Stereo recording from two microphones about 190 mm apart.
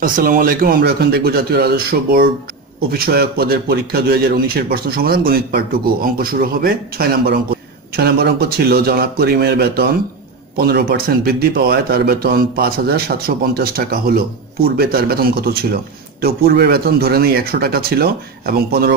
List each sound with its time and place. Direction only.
0.0 s a man's voice: 45° right (ahead or behind)